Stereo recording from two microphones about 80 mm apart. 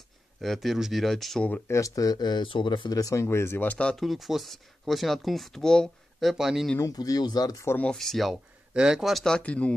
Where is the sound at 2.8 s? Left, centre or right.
Left.